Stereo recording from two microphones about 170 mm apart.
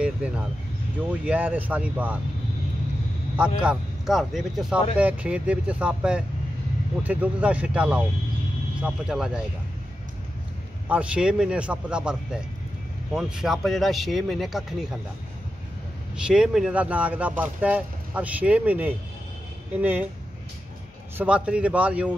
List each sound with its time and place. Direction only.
1.2 s speech: 10° right (ahead or behind)
3.3 s speech: 5° right (ahead or behind)
10.9 s speech: 5° right (ahead or behind)
16.2 s speech: 5° right (ahead or behind)
21.2 s speech: 5° right (ahead or behind)